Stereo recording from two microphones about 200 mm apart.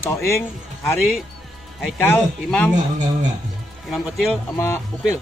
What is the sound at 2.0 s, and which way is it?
Speech, 10° left (ahead or behind).